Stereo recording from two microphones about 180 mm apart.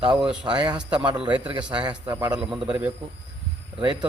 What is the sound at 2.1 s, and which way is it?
Speech, 20° right (ahead or behind).